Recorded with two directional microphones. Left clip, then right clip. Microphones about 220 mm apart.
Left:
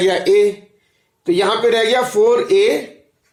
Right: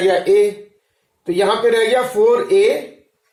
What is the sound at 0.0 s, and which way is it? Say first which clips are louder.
Speech: even; 50° left (ahead or behind).